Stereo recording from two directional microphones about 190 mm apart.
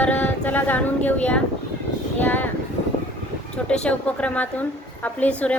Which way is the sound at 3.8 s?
5° left (ahead or behind).